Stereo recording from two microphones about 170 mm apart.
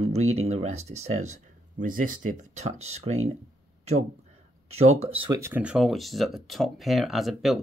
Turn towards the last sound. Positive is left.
turn(degrees=0)  # may be behind; listen again after turning